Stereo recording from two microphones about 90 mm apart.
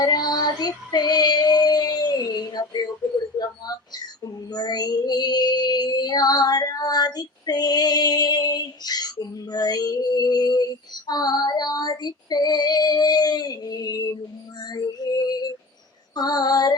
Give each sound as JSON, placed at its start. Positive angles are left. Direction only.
{"t": 0.0, "sound": "child singing", "side_deg": 50}
{"t": 3.9, "sound": "child singing", "side_deg": 50}